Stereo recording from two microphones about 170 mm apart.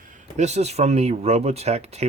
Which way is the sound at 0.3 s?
40° right (ahead or behind).